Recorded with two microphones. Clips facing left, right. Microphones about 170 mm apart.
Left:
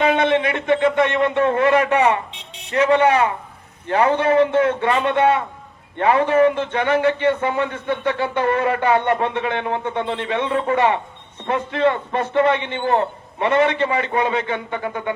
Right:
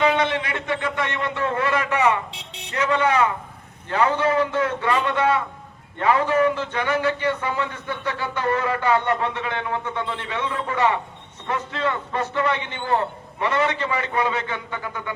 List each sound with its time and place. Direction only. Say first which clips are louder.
0.0 s a man's voice: left 4 dB; 25° left (ahead or behind)
2.3 s buzzer: right 1 dB; 75° right (ahead or behind)
2.8 s a man's voice: left 4 dB; 30° left (ahead or behind)